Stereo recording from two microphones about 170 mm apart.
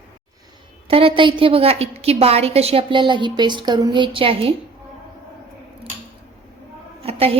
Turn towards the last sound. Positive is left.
turn(degrees=-35)  # may be behind; listen again after turning